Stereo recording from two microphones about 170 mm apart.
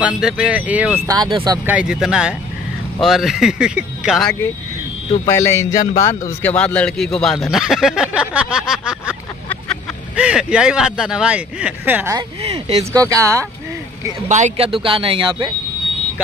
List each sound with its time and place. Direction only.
0.0 s speech: 5° right (ahead or behind)
1.0 s speech: 25° right (ahead or behind)
1.7 s speech: 5° right (ahead or behind)
5.2 s a man's voice: 15° left (ahead or behind); by 9.1 s 5° right (ahead or behind)
10.1 s speech: 5° right (ahead or behind)
12.2 s speech: 30° right (ahead or behind)
12.9 s speech: 20° right (ahead or behind)
14.3 s speech: 45° right (ahead or behind)
14.7 s speech: 30° right (ahead or behind)